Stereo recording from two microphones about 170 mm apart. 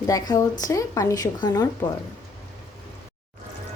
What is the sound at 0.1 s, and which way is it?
Speech, 20° left (ahead or behind).